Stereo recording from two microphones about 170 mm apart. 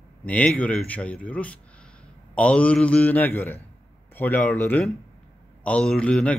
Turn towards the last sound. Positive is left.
turn(degrees=5)  # may be behind; listen again after turning